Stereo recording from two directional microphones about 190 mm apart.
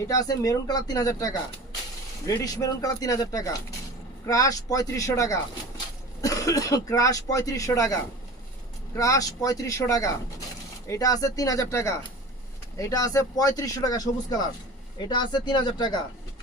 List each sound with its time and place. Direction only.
0.1 s speech: 20° left (ahead or behind)
9.0 s speech: 20° left (ahead or behind)